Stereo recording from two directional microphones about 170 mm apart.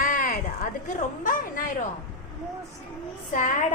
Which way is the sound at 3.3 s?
50° left (ahead or behind).